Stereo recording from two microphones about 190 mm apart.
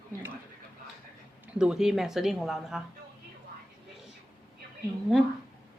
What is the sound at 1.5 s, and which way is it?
Speech, 5° right (ahead or behind).